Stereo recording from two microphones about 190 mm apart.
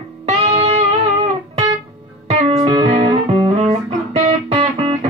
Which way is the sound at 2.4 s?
30° right (ahead or behind).